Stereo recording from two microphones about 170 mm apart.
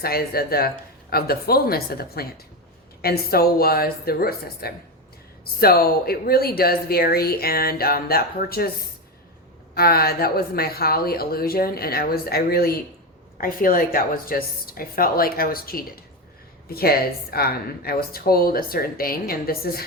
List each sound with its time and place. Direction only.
0.0 s speech: 65° left (ahead or behind)
9.7 s speech: 65° left (ahead or behind)